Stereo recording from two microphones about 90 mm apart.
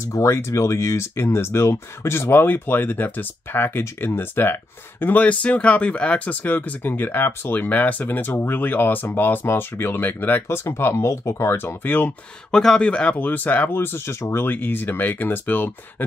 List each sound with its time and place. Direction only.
0.0 s speech: 30° left (ahead or behind)
12.4 s speech: 10° left (ahead or behind)